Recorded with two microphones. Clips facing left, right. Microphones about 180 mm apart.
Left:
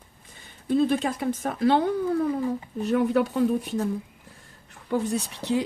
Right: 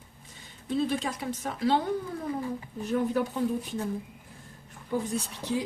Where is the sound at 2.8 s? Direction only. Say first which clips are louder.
Left 5 dB; 70° left (ahead or behind).